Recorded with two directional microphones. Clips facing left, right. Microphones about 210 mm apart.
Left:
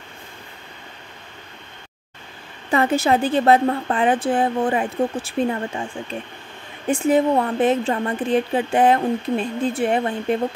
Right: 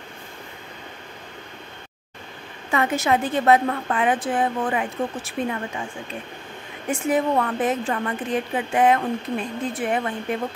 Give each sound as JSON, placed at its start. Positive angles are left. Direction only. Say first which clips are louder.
{"t": 2.7, "sound": "a woman's voice", "louder": "left 3 dB", "side_deg": 30}
{"t": 6.9, "sound": "speech", "louder": "left 4 dB", "side_deg": 25}